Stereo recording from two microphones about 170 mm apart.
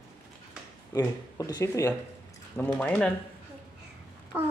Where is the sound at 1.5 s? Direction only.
20° left (ahead or behind).